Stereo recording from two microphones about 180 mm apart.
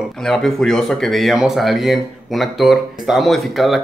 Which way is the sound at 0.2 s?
Centre (ahead or behind).